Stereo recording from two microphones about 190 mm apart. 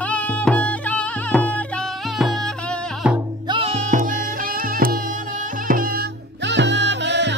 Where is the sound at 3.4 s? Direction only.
25° right (ahead or behind).